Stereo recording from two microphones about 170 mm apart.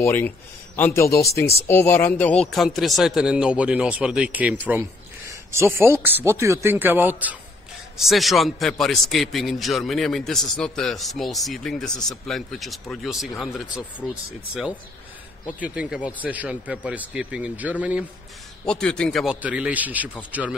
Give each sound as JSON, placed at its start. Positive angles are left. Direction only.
{"t": 0.0, "sound": "a man's voice", "side_deg": 15}
{"t": 15.6, "sound": "speech", "side_deg": -5}
{"t": 18.7, "sound": "a man's voice", "side_deg": 5}
{"t": 19.4, "sound": "speech", "side_deg": -10}